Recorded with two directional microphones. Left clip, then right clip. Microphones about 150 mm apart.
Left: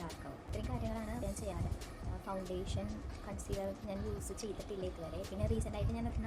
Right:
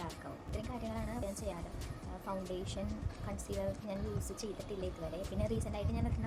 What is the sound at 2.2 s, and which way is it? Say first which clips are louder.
A woman's voice: even; 5° right (ahead or behind).